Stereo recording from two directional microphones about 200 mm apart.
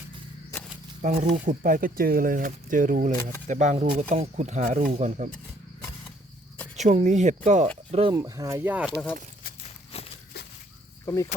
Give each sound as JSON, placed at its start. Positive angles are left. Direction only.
{"t": 1.0, "sound": "speech", "side_deg": -35}
{"t": 6.7, "sound": "speech", "side_deg": -35}
{"t": 8.1, "sound": "speech", "side_deg": -15}
{"t": 9.6, "sound": "a sound", "side_deg": 30}
{"t": 11.0, "sound": "cricket", "side_deg": 15}